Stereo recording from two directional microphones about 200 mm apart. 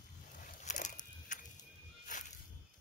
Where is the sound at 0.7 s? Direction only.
40° left (ahead or behind).